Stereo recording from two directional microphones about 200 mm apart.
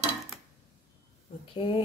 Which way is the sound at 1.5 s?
25° left (ahead or behind).